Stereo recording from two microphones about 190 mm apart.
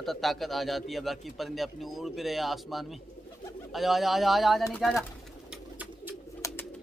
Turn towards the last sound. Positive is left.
turn(degrees=15)  # may be behind; listen again after turning